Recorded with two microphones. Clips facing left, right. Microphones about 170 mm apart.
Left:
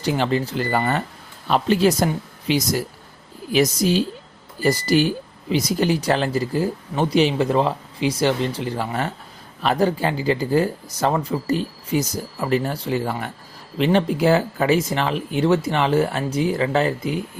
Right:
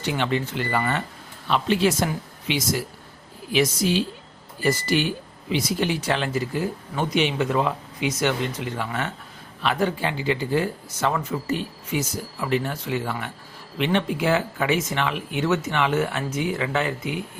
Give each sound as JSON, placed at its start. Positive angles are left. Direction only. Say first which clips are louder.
{"t": 0.0, "sound": "speech", "louder": "left 4 dB", "side_deg": 35}